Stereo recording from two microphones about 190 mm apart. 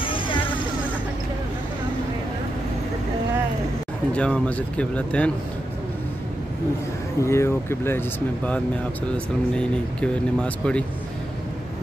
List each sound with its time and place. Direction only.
0.0 s music: 25° left (ahead or behind)
4.1 s speech: 5° left (ahead or behind)
7.2 s speech: 15° left (ahead or behind)
9.1 s speech: 5° left (ahead or behind)